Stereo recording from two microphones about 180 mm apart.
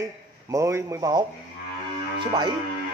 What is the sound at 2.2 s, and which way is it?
Music, 25° right (ahead or behind).